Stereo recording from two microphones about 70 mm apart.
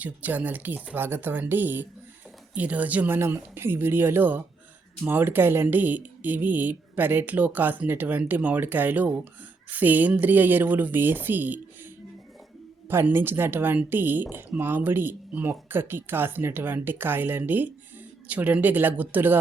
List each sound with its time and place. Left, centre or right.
0.0 s speech: right
3.2 s speech: right
13.1 s speech: right